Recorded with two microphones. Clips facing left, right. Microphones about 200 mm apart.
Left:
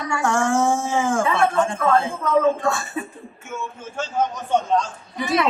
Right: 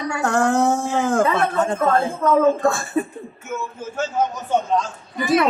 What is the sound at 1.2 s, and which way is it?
A man's voice, 40° right (ahead or behind).